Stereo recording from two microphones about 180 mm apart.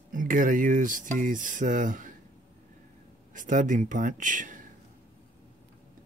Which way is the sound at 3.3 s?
45° right (ahead or behind).